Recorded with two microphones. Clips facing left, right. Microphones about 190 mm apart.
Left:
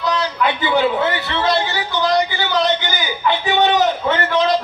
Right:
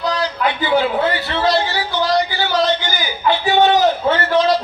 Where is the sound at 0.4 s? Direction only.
20° left (ahead or behind).